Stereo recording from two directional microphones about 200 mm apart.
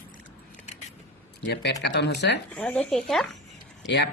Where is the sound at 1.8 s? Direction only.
60° left (ahead or behind).